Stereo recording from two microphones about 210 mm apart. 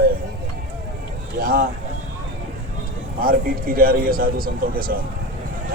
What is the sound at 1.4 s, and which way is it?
Speech, 45° right (ahead or behind).